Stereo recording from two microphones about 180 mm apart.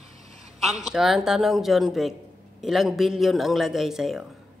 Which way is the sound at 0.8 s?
Centre (ahead or behind).